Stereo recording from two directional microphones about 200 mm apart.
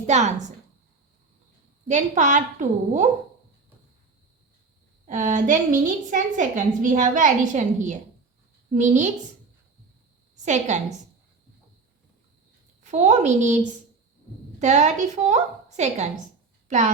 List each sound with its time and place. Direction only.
0.0 s a woman's voice: 35° right (ahead or behind)
1.9 s a woman's voice: 35° right (ahead or behind)
5.0 s a woman's voice: 40° right (ahead or behind)
10.4 s a woman's voice: 35° right (ahead or behind)
12.8 s a woman's voice: 35° right (ahead or behind)
14.6 s a woman's voice: 35° right (ahead or behind)